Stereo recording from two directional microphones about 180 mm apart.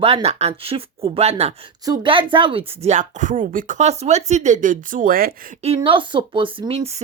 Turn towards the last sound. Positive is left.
turn(degrees=-30)  # may be behind; listen again after turning